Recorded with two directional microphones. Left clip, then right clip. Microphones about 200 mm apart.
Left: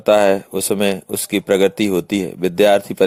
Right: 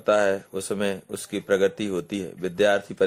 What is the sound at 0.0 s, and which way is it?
Speech, 35° left (ahead or behind).